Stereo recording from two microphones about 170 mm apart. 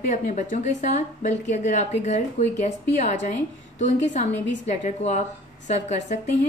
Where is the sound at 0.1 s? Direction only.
45° left (ahead or behind).